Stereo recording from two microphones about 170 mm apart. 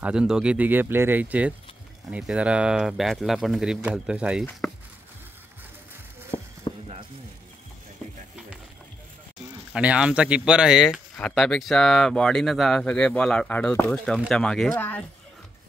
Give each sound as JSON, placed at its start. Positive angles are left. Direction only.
{"t": 0.0, "sound": "speech", "side_deg": -5}
{"t": 6.7, "sound": "sizzle", "side_deg": 30}
{"t": 9.7, "sound": "speech", "side_deg": -5}